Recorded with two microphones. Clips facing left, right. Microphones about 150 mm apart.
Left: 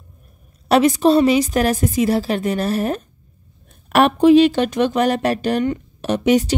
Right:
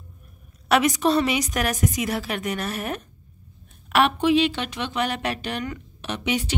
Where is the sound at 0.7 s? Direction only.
30° left (ahead or behind).